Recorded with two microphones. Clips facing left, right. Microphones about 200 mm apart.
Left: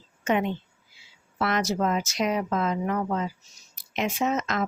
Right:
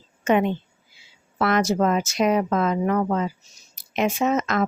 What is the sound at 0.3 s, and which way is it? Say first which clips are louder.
A woman's voice: right 5 dB; 55° right (ahead or behind).